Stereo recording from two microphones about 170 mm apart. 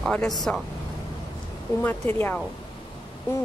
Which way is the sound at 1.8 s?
10° left (ahead or behind).